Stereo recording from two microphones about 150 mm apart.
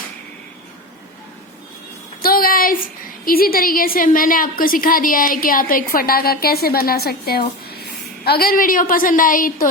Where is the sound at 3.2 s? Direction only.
75° left (ahead or behind).